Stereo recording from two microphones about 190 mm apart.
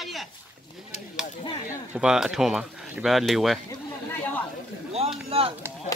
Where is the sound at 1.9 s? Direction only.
5° right (ahead or behind).